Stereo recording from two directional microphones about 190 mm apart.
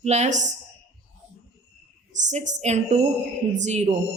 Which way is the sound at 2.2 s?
40° right (ahead or behind).